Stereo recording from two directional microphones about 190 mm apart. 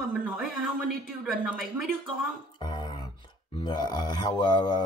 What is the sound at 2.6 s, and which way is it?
Music, 25° left (ahead or behind).